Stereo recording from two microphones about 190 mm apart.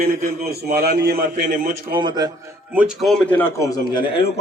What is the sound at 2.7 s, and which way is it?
A man's voice, 5° right (ahead or behind).